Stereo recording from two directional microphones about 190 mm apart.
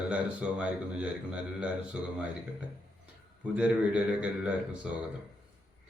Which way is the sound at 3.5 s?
5° right (ahead or behind).